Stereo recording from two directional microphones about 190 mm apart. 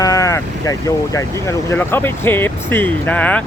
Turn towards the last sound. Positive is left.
turn(degrees=5)  # may be behind; listen again after turning